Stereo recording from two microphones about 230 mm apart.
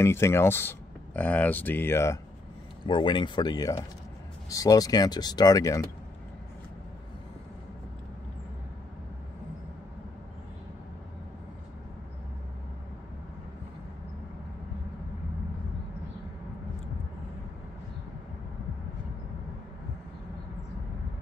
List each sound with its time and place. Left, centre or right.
0.0 s speech: centre